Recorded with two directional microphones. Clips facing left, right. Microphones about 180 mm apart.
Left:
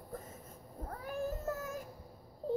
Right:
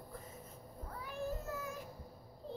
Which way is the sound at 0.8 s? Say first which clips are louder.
Left 4 dB; 45° left (ahead or behind).